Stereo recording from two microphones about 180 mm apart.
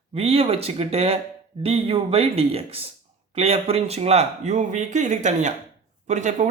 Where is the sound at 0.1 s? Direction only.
35° right (ahead or behind).